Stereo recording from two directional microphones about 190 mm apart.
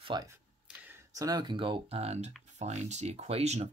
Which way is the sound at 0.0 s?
20° right (ahead or behind).